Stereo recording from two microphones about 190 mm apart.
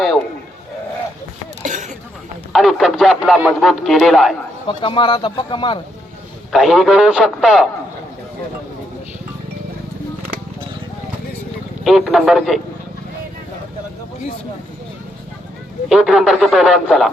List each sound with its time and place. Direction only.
1.6 s a sound: 40° right (ahead or behind)
2.5 s speech: centre (ahead or behind)
4.7 s speech: 25° left (ahead or behind)
6.5 s a man's voice: centre (ahead or behind)
11.8 s a man's voice: centre (ahead or behind)
15.9 s a man's voice: centre (ahead or behind)